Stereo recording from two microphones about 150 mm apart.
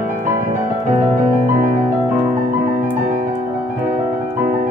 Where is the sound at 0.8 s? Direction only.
60° right (ahead or behind).